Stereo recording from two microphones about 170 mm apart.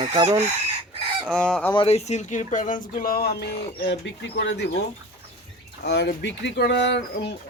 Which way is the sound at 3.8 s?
90° left.